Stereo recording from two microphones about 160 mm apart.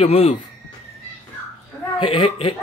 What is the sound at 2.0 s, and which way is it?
Speech, 35° left (ahead or behind).